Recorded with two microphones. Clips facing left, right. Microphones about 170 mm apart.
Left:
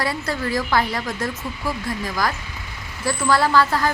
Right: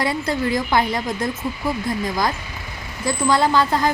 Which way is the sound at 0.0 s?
20° right (ahead or behind).